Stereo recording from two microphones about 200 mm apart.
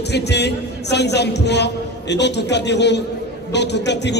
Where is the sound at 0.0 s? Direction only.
55° left (ahead or behind).